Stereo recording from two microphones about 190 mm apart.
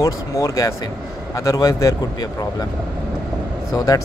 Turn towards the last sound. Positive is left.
turn(degrees=20)  # may be behind; listen again after turning